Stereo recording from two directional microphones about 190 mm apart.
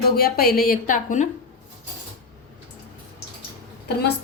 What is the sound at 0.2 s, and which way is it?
A woman's voice, 55° left (ahead or behind).